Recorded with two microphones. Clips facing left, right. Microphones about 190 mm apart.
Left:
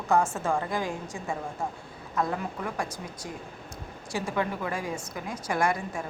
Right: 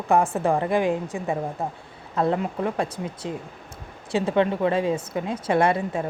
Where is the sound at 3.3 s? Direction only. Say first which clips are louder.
Right 8 dB; 90° right.